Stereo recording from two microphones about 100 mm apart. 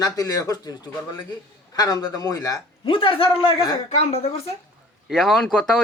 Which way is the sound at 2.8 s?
65° left (ahead or behind).